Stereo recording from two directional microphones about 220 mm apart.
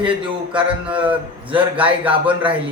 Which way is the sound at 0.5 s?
5° right (ahead or behind).